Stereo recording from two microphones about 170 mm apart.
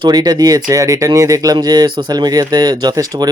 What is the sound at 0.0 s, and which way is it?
Speech, 25° right (ahead or behind).